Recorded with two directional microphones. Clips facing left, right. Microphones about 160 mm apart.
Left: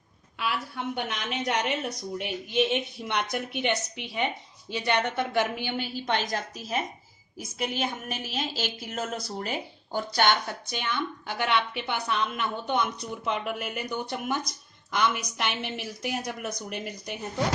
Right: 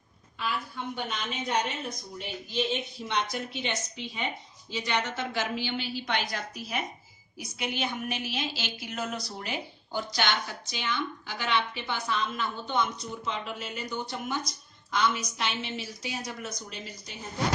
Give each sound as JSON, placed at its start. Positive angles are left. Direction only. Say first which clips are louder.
{"t": 0.3, "sound": "a woman's voice", "louder": "left 2 dB", "side_deg": 70}